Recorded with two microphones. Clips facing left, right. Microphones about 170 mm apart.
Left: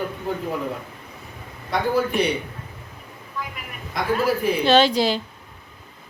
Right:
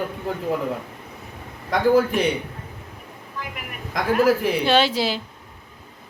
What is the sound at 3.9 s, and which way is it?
Speech, 90° right.